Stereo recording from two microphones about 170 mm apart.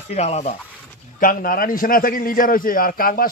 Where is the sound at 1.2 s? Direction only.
55° left (ahead or behind).